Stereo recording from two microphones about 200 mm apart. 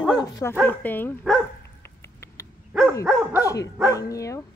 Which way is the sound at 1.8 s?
15° left (ahead or behind).